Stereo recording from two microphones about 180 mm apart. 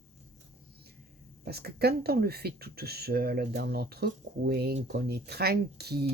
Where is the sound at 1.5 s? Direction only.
60° right (ahead or behind).